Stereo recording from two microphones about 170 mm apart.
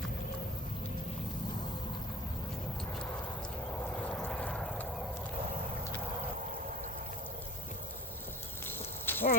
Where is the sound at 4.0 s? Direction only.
10° left (ahead or behind).